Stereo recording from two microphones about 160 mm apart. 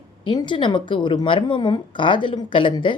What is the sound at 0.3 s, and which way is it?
A woman's voice, 30° left (ahead or behind).